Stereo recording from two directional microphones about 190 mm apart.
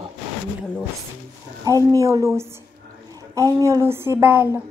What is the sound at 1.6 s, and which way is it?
Speech, 20° right (ahead or behind).